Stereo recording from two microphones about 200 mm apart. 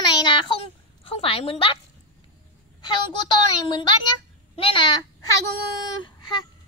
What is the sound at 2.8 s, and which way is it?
Speech, 25° left (ahead or behind).